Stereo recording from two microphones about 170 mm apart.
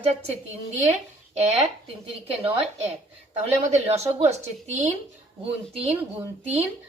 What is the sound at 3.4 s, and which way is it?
Speech, 40° right (ahead or behind).